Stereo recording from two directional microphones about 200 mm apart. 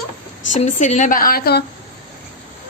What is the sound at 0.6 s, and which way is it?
A woman's voice, 35° left (ahead or behind).